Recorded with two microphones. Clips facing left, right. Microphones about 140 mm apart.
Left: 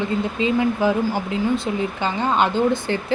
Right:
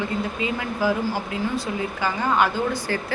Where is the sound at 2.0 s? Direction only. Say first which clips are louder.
Left 1 dB; 25° left (ahead or behind).